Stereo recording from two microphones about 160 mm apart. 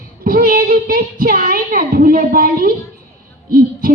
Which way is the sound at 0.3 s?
60° right (ahead or behind).